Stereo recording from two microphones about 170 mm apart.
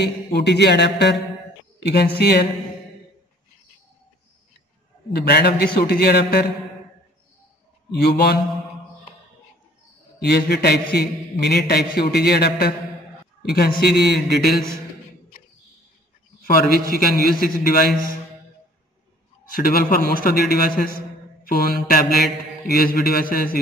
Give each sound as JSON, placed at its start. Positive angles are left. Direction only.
{"t": 0.0, "sound": "a sound", "side_deg": 80}
{"t": 1.8, "sound": "a man's voice", "side_deg": 75}
{"t": 5.1, "sound": "a man's voice", "side_deg": 70}
{"t": 7.9, "sound": "a man's voice", "side_deg": 65}
{"t": 10.2, "sound": "a man's voice", "side_deg": 70}
{"t": 16.4, "sound": "a man's voice", "side_deg": 60}
{"t": 19.5, "sound": "a man's voice", "side_deg": 60}